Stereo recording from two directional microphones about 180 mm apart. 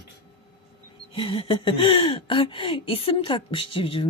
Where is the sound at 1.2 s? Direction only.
30° left (ahead or behind).